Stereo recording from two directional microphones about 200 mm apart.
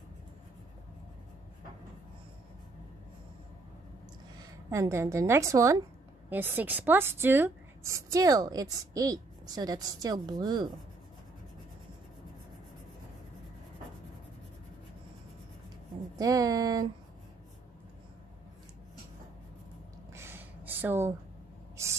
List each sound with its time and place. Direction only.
4.6 s a woman's voice: 15° right (ahead or behind)
16.2 s a woman's voice: 20° right (ahead or behind)
20.2 s a sound: 10° right (ahead or behind)